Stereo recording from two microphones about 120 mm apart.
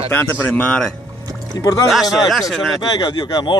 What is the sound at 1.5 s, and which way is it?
Speech, 30° left (ahead or behind).